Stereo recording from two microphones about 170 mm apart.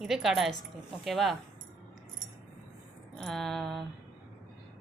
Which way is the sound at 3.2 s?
Centre (ahead or behind).